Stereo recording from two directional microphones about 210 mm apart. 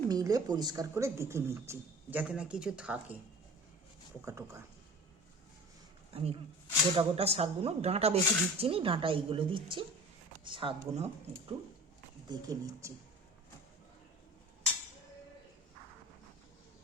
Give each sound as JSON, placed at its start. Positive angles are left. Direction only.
{"t": 0.1, "sound": "speech", "side_deg": -15}
{"t": 4.3, "sound": "speech", "side_deg": -15}
{"t": 6.1, "sound": "speech", "side_deg": -25}
{"t": 12.3, "sound": "speech", "side_deg": -15}